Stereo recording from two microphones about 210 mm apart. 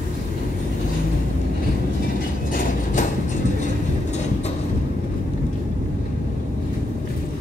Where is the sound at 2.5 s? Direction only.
40° left (ahead or behind).